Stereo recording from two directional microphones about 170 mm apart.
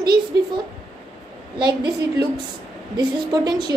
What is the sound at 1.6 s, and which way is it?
A woman's voice, 25° right (ahead or behind).